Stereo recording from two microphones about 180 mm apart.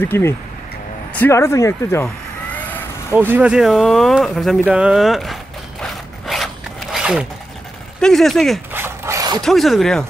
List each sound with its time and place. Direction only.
0.0 s speech: 10° left (ahead or behind)
2.5 s vehicle: 10° left (ahead or behind)
3.2 s speech: 10° right (ahead or behind)
8.7 s rub: 15° right (ahead or behind)
9.4 s speech: centre (ahead or behind)